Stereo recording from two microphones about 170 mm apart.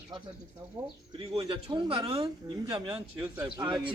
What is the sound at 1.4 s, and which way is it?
Speech, 25° right (ahead or behind).